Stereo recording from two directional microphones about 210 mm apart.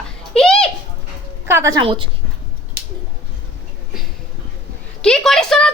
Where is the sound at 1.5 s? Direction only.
15° right (ahead or behind).